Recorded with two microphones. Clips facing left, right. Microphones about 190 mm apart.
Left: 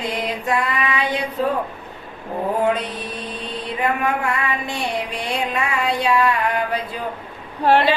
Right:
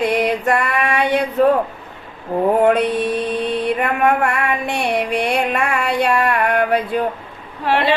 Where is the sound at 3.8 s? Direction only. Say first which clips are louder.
Even; 60° right (ahead or behind).